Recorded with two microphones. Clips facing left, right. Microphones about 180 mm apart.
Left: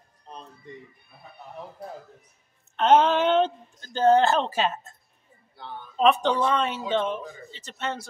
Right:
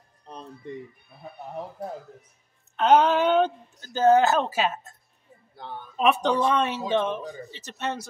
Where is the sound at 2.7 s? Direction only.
5° right (ahead or behind).